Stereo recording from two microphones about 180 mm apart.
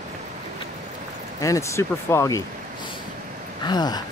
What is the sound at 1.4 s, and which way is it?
Speech, 15° left (ahead or behind).